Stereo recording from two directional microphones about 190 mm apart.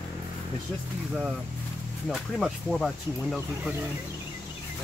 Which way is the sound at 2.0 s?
Centre (ahead or behind).